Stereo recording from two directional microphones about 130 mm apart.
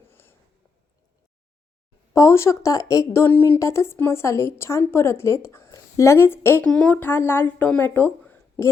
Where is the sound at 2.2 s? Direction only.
20° left (ahead or behind).